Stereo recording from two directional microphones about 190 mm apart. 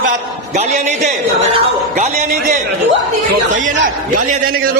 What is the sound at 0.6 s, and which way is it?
A man's voice, 35° right (ahead or behind).